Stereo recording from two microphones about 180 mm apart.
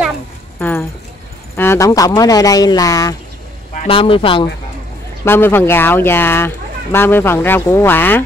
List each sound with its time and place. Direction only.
0.6 s speech: 10° left (ahead or behind)
3.8 s speech: 30° left (ahead or behind)
5.2 s speech: 10° left (ahead or behind)